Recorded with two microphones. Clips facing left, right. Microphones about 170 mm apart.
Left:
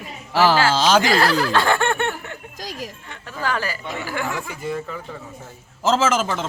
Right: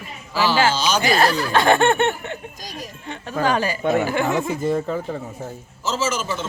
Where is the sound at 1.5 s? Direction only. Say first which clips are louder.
Right 3 dB; 20° right (ahead or behind).